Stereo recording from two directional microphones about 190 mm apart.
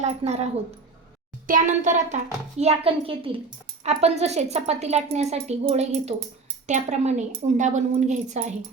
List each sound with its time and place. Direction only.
0.0 s a woman's voice: 35° right (ahead or behind)